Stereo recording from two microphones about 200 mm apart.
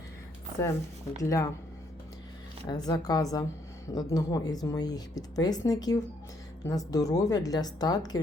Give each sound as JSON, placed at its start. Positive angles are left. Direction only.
{"t": 1.2, "sound": "a woman's voice", "side_deg": 15}
{"t": 2.6, "sound": "a woman's voice", "side_deg": 20}